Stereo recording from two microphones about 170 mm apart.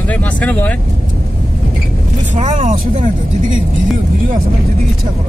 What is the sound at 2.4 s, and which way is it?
Speech, 45° right (ahead or behind).